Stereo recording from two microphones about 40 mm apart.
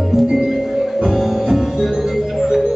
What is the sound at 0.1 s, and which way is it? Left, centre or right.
Music, centre.